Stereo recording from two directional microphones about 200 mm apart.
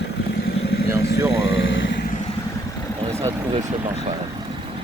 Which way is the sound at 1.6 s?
65° left (ahead or behind).